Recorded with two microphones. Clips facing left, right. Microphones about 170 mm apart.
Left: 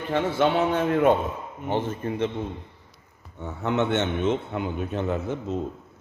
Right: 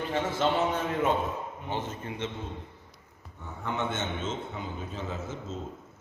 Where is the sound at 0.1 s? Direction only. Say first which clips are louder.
Left 6 dB; 60° left (ahead or behind).